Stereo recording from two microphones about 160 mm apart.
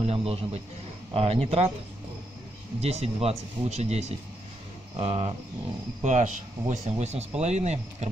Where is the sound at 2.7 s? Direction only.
40° right (ahead or behind).